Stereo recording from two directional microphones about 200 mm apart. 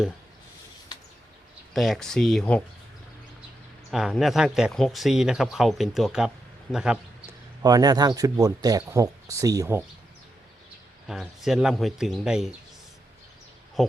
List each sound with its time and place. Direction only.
1.7 s speech: centre (ahead or behind)
3.9 s speech: centre (ahead or behind)
7.6 s speech: 20° right (ahead or behind)
11.1 s speech: centre (ahead or behind)
13.8 s speech: centre (ahead or behind)